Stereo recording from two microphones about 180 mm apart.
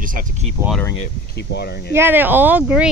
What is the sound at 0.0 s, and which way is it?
Speech, 50° right (ahead or behind).